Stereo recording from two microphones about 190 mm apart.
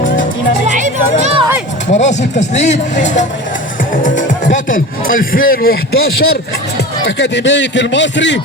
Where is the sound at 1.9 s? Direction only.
35° left (ahead or behind).